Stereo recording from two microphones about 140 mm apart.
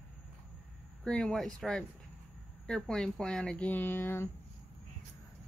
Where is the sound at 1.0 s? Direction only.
5° left (ahead or behind).